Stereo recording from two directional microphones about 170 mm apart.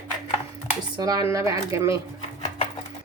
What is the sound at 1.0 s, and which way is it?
Speech, 20° right (ahead or behind).